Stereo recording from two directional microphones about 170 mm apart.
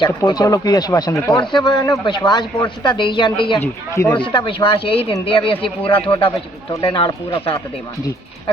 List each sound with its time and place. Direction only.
0.0 s speech: 25° left (ahead or behind)
3.6 s speech: 10° left (ahead or behind)
4.2 s speech: 30° left (ahead or behind)